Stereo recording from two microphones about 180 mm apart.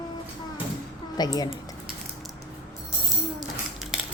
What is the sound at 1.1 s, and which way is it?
Speech, 20° left (ahead or behind).